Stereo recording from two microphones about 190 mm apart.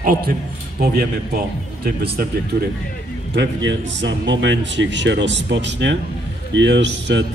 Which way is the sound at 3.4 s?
70° right (ahead or behind).